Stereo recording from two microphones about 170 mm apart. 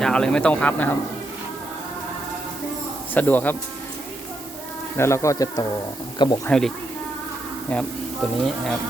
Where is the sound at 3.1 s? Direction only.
10° left (ahead or behind).